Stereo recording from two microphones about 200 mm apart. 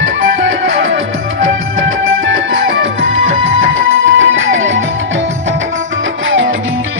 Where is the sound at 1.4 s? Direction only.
80° right.